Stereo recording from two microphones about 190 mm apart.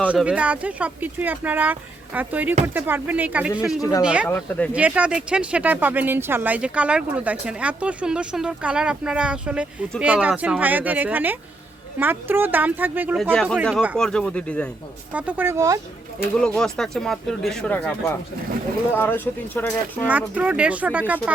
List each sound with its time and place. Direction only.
0.0 s speech: 5° right (ahead or behind)
4.3 s speech: 10° left (ahead or behind)
4.7 s speech: 5° right (ahead or behind)
13.3 s speech: 5° left (ahead or behind)
15.1 s speech: 10° right (ahead or behind)
16.4 s speech: 5° left (ahead or behind)
20.1 s speech: 10° right (ahead or behind)